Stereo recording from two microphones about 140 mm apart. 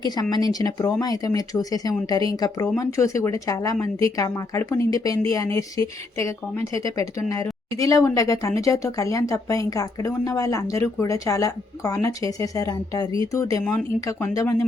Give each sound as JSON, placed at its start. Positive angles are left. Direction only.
{"t": 0.0, "sound": "a woman's voice", "side_deg": 30}